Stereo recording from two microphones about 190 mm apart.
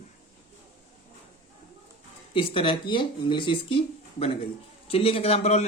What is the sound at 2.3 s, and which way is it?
Speech, 30° left (ahead or behind).